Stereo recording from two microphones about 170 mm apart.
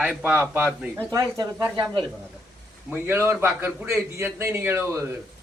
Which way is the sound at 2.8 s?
10° right (ahead or behind).